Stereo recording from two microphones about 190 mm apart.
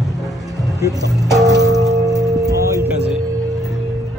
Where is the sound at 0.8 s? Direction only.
20° right (ahead or behind).